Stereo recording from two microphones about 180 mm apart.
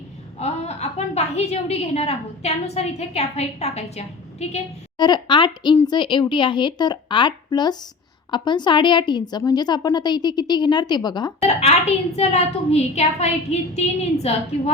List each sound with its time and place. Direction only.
0.3 s a woman's voice: 35° left (ahead or behind)
4.9 s a woman's voice: 25° left (ahead or behind)
11.3 s a child's voice: 35° left (ahead or behind)